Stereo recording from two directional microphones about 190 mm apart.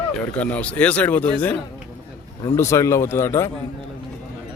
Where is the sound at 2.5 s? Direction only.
15° left (ahead or behind).